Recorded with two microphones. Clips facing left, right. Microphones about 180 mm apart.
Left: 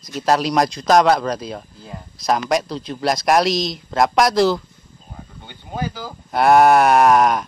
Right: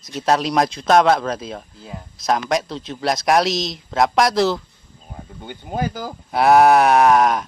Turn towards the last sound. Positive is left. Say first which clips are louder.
# even
turn(degrees=0)  # may be behind; listen again after turning